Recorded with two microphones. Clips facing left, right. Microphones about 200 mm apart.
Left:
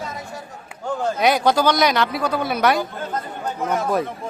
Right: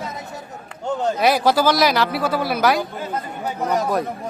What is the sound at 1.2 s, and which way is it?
A man's voice, centre (ahead or behind).